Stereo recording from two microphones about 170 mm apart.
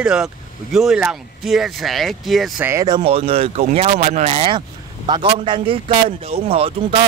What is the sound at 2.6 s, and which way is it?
A man's voice, 20° right (ahead or behind).